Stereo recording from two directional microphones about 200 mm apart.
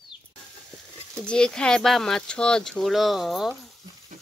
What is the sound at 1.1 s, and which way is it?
Speech, 5° left (ahead or behind).